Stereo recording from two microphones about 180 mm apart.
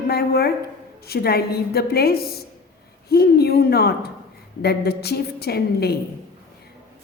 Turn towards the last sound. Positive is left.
turn(degrees=60)  # may be behind; listen again after turning